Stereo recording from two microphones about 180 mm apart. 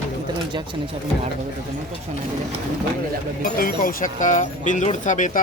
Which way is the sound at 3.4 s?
55° left (ahead or behind).